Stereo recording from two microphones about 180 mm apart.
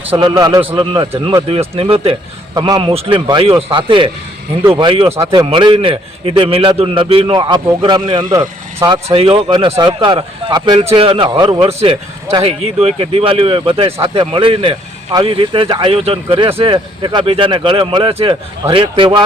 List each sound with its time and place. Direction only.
0.1 s speech: 30° right (ahead or behind)
9.0 s speech: 30° right (ahead or behind)